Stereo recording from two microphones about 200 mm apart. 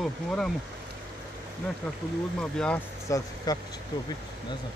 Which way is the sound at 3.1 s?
15° left (ahead or behind).